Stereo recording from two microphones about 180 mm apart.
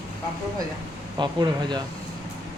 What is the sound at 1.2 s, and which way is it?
Speech, 25° right (ahead or behind).